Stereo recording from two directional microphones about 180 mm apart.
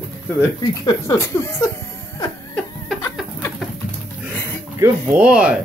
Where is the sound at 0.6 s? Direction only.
20° left (ahead or behind).